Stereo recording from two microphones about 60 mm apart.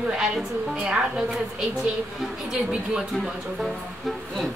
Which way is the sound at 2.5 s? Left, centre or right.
Centre.